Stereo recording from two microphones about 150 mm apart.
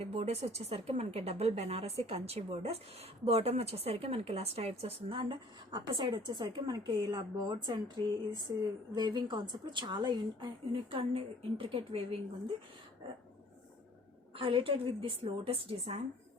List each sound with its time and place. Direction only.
0.0 s a woman's voice: 40° right (ahead or behind)
14.3 s a woman's voice: 35° right (ahead or behind)